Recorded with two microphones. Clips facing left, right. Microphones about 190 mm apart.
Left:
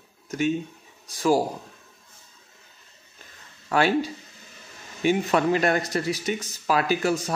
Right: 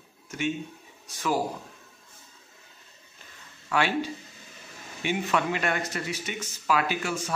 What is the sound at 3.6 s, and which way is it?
Speech, 40° left (ahead or behind).